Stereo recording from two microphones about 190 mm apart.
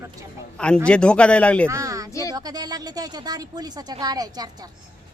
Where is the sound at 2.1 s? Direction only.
15° left (ahead or behind).